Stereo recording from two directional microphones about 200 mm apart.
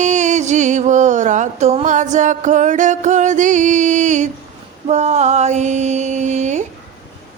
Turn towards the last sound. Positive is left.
turn(degrees=-35)  # may be behind; listen again after turning